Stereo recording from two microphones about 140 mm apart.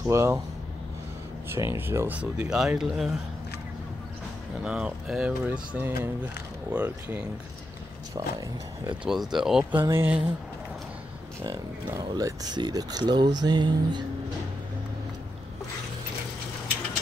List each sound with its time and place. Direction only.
0.0 s speech: 20° right (ahead or behind)
1.7 s speech: 15° right (ahead or behind)
4.6 s speech: 5° right (ahead or behind)
8.1 s speech: 25° right (ahead or behind)
9.0 s speech: 5° right (ahead or behind)
11.4 s speech: 20° right (ahead or behind)